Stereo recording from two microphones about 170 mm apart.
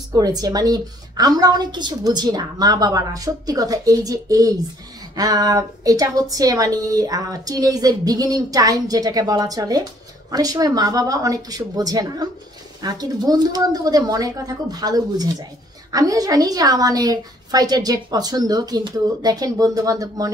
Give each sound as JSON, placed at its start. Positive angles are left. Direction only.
{"t": 0.1, "sound": "a woman's voice", "side_deg": -20}